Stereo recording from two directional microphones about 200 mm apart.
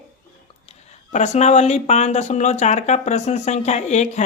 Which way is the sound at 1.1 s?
35° left (ahead or behind).